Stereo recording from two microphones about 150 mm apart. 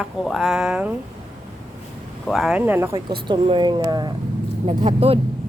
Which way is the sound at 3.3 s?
30° right (ahead or behind).